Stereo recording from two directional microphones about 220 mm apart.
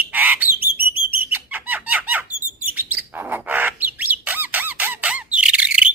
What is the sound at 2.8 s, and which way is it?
Bird, 10° right (ahead or behind).